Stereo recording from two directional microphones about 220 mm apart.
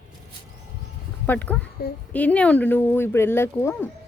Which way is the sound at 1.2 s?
10° left (ahead or behind).